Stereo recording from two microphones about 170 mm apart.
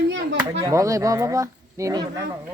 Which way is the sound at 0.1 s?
90° right.